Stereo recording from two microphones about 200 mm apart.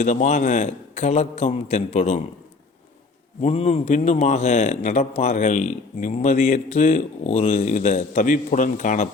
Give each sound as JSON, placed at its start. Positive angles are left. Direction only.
{"t": 0.0, "sound": "a man's voice", "side_deg": 40}
{"t": 3.4, "sound": "a man's voice", "side_deg": 30}